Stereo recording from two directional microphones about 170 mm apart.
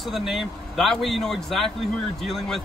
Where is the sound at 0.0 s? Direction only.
Centre (ahead or behind).